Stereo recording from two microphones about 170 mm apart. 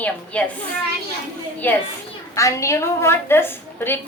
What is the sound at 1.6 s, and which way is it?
A woman's voice, 10° left (ahead or behind).